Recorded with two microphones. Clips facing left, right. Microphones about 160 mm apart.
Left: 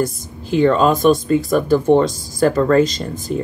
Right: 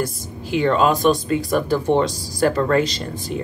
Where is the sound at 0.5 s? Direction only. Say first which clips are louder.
Left 3 dB; 45° left (ahead or behind).